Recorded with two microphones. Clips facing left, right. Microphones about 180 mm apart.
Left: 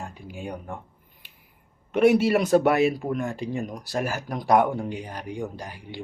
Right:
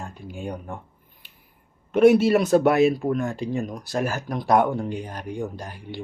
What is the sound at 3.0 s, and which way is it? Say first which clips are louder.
Speech: right 3 dB; 10° left (ahead or behind).